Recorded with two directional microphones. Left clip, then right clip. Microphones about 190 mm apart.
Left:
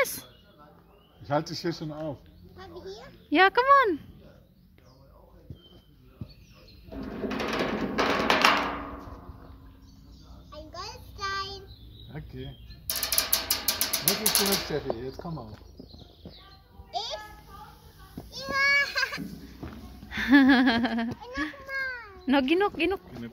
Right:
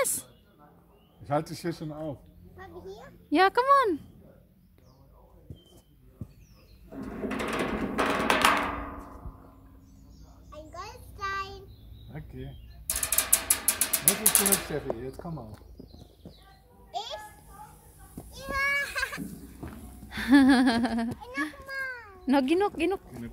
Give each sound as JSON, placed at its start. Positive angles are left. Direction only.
{"t": 1.2, "sound": "a man's voice", "side_deg": -15}
{"t": 2.0, "sound": "speech", "side_deg": 0}
{"t": 3.3, "sound": "a man's voice", "side_deg": -10}
{"t": 7.1, "sound": "a sound", "side_deg": 0}
{"t": 10.5, "sound": "child singing", "side_deg": 0}
{"t": 12.1, "sound": "speech", "side_deg": -5}
{"t": 12.9, "sound": "a sound", "side_deg": 0}
{"t": 14.8, "sound": "a man's voice", "side_deg": -5}
{"t": 16.9, "sound": "children playing", "side_deg": 0}
{"t": 18.1, "sound": "goat", "side_deg": 0}
{"t": 19.7, "sound": "a sound", "side_deg": -15}
{"t": 21.6, "sound": "babbling", "side_deg": -30}
{"t": 22.2, "sound": "a man's voice", "side_deg": -15}